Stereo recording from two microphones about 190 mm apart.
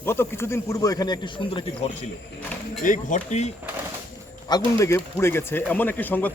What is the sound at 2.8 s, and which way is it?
Speech, 40° left (ahead or behind).